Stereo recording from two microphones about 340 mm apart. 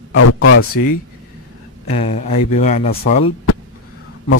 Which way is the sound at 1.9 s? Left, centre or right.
Left.